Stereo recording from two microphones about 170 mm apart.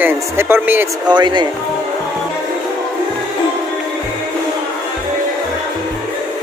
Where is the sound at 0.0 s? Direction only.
10° right (ahead or behind).